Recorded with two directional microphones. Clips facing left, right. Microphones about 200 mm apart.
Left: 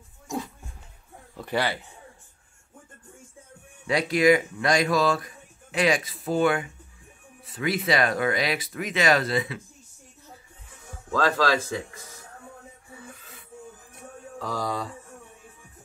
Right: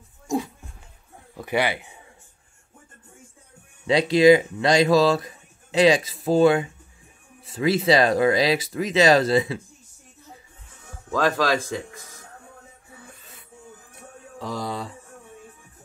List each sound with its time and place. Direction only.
1.3 s speech: 15° right (ahead or behind)
3.8 s speech: 25° right (ahead or behind)
11.1 s speech: 15° right (ahead or behind)
14.4 s speech: 25° right (ahead or behind)